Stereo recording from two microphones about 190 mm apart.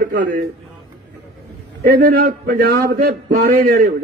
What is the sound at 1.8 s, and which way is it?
A man's voice, 50° right (ahead or behind).